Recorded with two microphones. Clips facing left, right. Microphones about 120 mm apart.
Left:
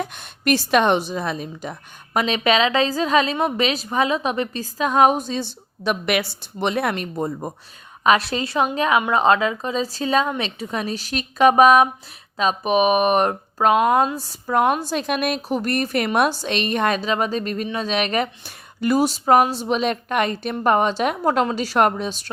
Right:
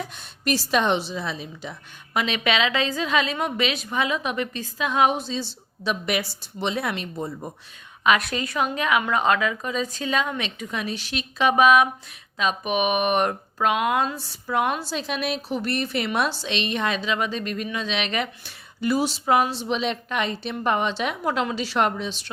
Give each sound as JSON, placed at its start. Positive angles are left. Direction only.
{"t": 0.0, "sound": "a woman's voice", "side_deg": 60}
{"t": 2.1, "sound": "a woman's voice", "side_deg": 40}
{"t": 8.0, "sound": "a woman's voice", "side_deg": 30}